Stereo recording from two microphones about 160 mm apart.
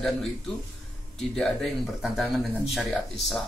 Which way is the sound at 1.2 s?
5° left (ahead or behind).